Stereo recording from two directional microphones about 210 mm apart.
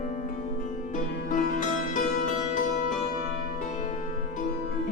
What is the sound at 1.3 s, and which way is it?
Music, 40° left (ahead or behind).